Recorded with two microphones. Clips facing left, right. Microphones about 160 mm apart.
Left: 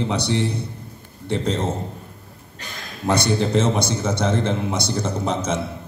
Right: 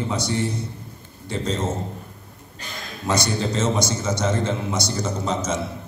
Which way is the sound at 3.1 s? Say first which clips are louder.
Left 3 dB; 60° left (ahead or behind).